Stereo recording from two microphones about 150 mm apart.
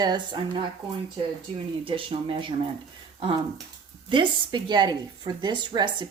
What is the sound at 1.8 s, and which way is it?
Speech, 35° right (ahead or behind).